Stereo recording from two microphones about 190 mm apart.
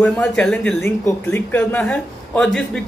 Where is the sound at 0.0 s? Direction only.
5° left (ahead or behind).